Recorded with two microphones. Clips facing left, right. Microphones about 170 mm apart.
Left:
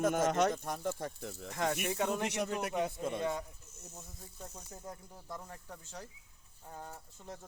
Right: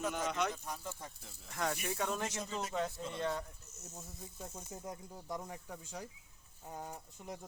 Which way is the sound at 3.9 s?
5° right (ahead or behind).